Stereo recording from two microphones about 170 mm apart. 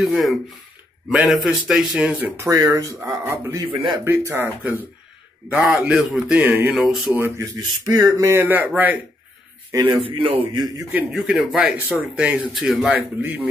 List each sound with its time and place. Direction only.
0.0 s speech: centre (ahead or behind); by 3.6 s 15° right (ahead or behind)
3.7 s speech: 30° right (ahead or behind)
4.0 s speech: 15° right (ahead or behind)
7.2 s a man's voice: 15° right (ahead or behind)
9.9 s a man's voice: 35° right (ahead or behind)
10.9 s speech: 10° right (ahead or behind)